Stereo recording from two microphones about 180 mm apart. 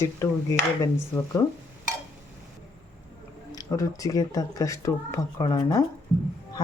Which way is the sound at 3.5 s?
20° left (ahead or behind).